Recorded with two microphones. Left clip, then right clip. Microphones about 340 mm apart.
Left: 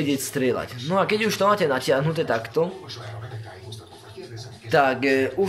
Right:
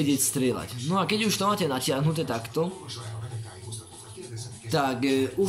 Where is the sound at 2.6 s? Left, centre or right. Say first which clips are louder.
Left 4 dB; left.